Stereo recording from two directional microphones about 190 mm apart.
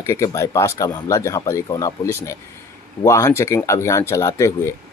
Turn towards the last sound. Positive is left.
turn(degrees=15)  # may be behind; listen again after turning